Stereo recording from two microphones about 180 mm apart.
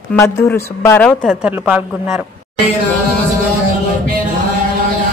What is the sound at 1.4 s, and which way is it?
Speech, 10° right (ahead or behind).